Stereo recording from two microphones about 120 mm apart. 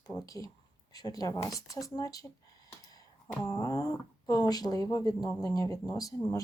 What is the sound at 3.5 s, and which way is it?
Speech, 30° left (ahead or behind).